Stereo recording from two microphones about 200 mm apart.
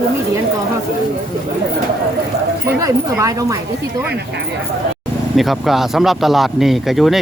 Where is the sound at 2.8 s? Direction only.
15° right (ahead or behind).